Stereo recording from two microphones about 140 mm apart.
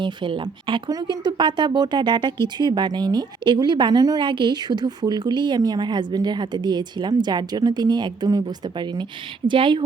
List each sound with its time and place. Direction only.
0.0 s a woman's voice: 35° right (ahead or behind)